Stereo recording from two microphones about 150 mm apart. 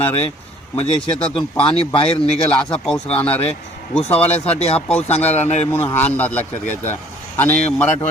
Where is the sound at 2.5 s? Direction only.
5° left (ahead or behind).